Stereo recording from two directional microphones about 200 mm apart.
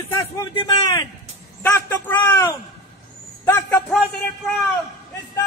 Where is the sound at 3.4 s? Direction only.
5° left (ahead or behind).